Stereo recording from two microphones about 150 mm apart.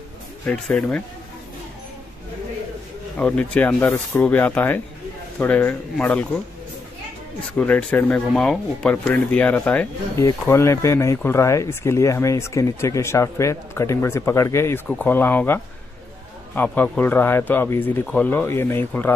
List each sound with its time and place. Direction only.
0.5 s speech: 5° left (ahead or behind)
3.2 s speech: 10° left (ahead or behind)
7.5 s speech: 10° left (ahead or behind)